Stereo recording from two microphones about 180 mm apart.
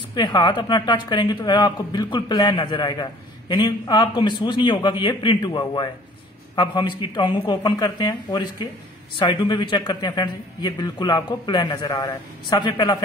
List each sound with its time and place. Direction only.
0.1 s speech: 25° left (ahead or behind)